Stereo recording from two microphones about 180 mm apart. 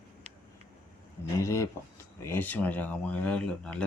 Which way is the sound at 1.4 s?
15° left (ahead or behind).